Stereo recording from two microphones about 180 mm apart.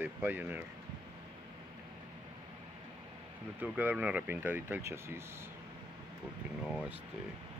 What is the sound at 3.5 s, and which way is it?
Speech, 10° right (ahead or behind).